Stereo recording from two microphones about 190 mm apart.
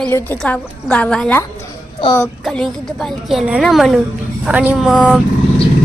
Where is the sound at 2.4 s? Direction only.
5° left (ahead or behind).